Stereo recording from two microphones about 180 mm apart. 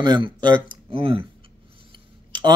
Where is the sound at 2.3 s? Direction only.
25° right (ahead or behind).